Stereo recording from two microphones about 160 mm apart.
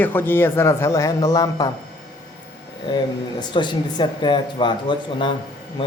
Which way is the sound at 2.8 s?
30° left (ahead or behind).